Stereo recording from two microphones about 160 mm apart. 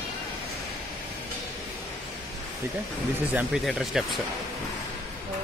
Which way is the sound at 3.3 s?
5° right (ahead or behind).